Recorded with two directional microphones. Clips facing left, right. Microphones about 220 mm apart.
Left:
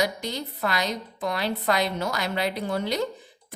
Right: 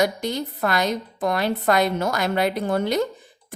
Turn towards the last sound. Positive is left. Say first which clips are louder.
# right 5 dB
turn(degrees=-50)  # may be behind; listen again after turning